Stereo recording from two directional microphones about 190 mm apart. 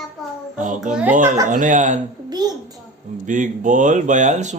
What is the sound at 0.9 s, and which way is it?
Speech, 5° right (ahead or behind).